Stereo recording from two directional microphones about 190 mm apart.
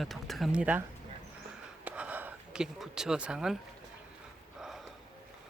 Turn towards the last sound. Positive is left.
turn(degrees=0)  # may be behind; listen again after turning